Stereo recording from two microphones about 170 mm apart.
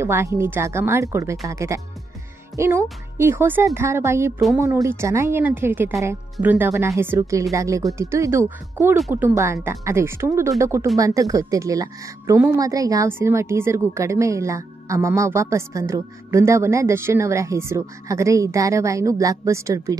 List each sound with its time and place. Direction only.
0.0 s a woman's voice: 15° right (ahead or behind)